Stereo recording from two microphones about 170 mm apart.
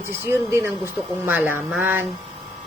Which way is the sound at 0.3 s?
15° right (ahead or behind).